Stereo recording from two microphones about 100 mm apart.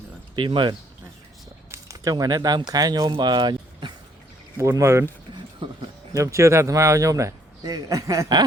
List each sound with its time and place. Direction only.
0.3 s speech: 55° right (ahead or behind)
1.7 s speech: 35° right (ahead or behind)
3.2 s music: 45° right (ahead or behind)
4.5 s speech: 30° right (ahead or behind)
6.1 s speech: 30° right (ahead or behind)